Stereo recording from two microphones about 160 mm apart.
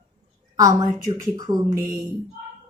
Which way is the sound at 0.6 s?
20° right (ahead or behind).